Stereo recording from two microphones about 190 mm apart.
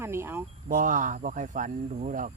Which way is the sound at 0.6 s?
45° right (ahead or behind).